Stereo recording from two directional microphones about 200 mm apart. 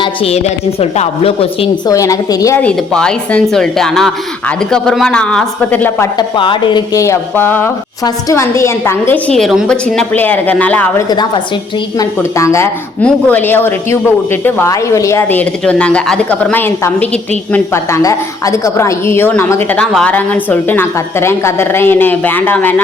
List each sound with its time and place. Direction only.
0.0 s a woman's voice: 30° left (ahead or behind)
1.9 s a woman's voice: 15° left (ahead or behind)
6.1 s a woman's voice: 25° left (ahead or behind); by 22.7 s 10° left (ahead or behind)